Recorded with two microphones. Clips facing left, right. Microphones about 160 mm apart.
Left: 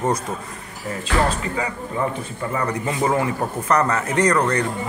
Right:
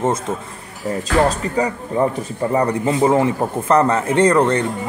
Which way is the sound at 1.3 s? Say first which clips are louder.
Right 5 dB; 40° right (ahead or behind).